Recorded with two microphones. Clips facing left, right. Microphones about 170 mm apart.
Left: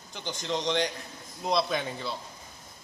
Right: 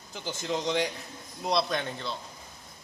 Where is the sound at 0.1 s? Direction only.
5° right (ahead or behind).